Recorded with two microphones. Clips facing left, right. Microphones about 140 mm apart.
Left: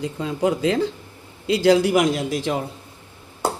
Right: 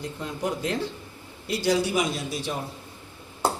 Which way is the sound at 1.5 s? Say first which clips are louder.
Left 8 dB; 90° left.